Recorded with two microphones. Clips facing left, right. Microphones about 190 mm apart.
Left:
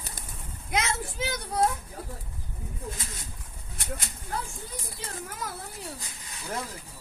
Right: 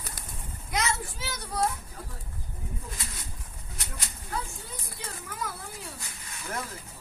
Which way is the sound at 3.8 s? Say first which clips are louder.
Left 6 dB; 55° left (ahead or behind).